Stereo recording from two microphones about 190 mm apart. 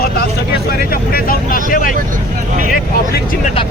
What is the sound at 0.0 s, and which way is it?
Vehicle, 55° left (ahead or behind).